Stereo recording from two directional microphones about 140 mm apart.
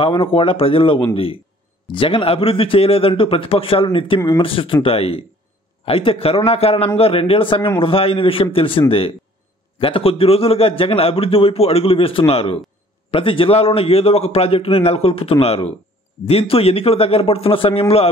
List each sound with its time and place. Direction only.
0.0 s a man's voice: 40° left (ahead or behind)